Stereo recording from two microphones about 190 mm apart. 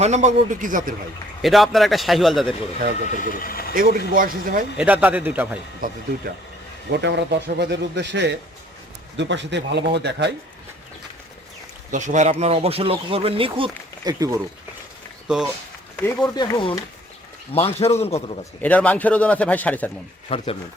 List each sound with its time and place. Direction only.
0.0 s speech: 35° right (ahead or behind)
1.4 s a man's voice: centre (ahead or behind)
3.2 s speech: 50° left (ahead or behind)
3.8 s speech: 45° right (ahead or behind)
4.8 s a man's voice: 5° right (ahead or behind)
5.8 s speech: 45° right (ahead or behind)
6.9 s speech: 60° right (ahead or behind)
11.9 s speech: 40° right (ahead or behind); by 14.3 s 20° right (ahead or behind)
15.3 s a man's voice: 5° right (ahead or behind)
16.0 s a man's voice: 10° left (ahead or behind)
16.3 s a man's voice: 20° left (ahead or behind)
18.6 s a man's voice: 10° left (ahead or behind)
20.3 s a man's voice: 30° left (ahead or behind)